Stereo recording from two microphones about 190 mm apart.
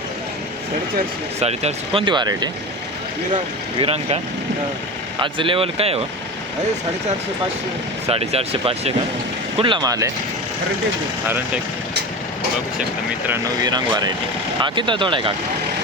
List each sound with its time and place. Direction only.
1.4 s speech: 35° right (ahead or behind)
3.8 s speech: 30° right (ahead or behind)
5.2 s speech: 25° right (ahead or behind)
8.0 s speech: 35° right (ahead or behind)
13.2 s speech: 15° right (ahead or behind)